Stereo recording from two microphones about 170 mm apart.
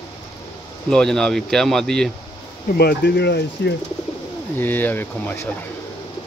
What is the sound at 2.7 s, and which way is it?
Speech, 65° left (ahead or behind).